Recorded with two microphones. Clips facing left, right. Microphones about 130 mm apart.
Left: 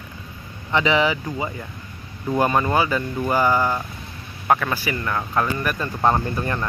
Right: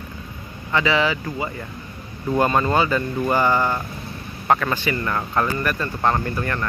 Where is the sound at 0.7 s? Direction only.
20° left (ahead or behind).